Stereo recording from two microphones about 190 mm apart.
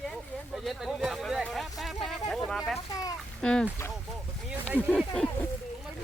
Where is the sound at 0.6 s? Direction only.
Centre (ahead or behind).